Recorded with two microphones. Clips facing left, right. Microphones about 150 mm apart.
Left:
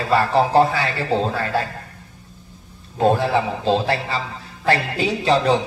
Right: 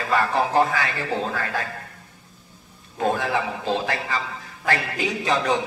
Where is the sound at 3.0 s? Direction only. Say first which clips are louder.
Left 6 dB; 30° left (ahead or behind).